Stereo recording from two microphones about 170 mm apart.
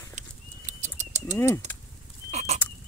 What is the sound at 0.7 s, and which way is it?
Bird flight, 45° right (ahead or behind).